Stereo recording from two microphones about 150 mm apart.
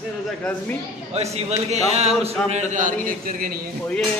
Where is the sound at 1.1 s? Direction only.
45° right (ahead or behind); by 3.6 s 70° right (ahead or behind).